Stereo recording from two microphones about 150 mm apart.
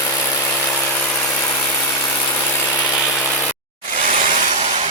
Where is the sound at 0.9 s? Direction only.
10° left (ahead or behind).